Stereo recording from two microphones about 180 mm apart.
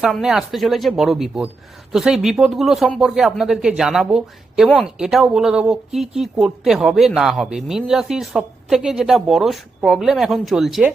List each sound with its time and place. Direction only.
0.0 s speech: 5° right (ahead or behind)